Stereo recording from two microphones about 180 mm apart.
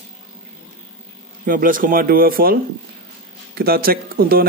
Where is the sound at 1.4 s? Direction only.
50° right (ahead or behind).